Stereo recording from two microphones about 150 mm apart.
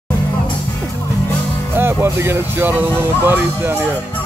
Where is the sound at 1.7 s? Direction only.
15° right (ahead or behind).